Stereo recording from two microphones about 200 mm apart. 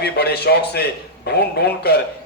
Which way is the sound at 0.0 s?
55° left (ahead or behind).